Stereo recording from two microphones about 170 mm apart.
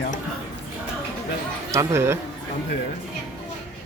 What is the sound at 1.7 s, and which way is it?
Speech, 15° right (ahead or behind).